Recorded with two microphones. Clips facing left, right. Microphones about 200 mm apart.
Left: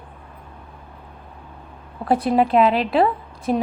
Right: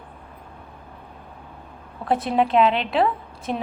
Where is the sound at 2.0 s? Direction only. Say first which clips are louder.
Left 3 dB; centre (ahead or behind).